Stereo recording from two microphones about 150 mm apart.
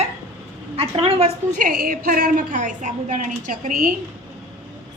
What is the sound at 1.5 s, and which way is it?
A woman's voice, 65° right (ahead or behind).